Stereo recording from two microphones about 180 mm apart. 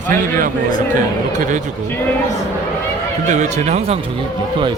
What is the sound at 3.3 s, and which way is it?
Speech, 40° right (ahead or behind).